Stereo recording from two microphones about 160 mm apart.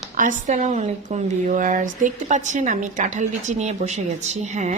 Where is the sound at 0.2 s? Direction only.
50° right (ahead or behind).